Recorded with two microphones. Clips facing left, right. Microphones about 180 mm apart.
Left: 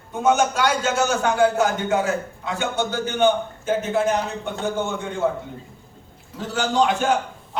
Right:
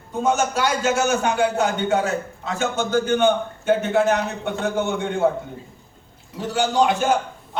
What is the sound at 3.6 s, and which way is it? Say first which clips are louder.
Speech: right 3 dB; 70° right (ahead or behind).